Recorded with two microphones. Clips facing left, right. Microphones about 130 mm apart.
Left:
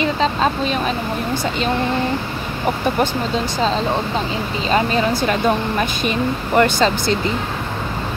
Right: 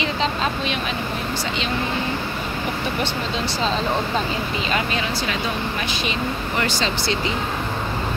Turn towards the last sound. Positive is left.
turn(degrees=45)  # may be behind; listen again after turning